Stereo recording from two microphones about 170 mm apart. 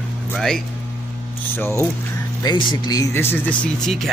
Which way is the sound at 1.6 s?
15° left (ahead or behind).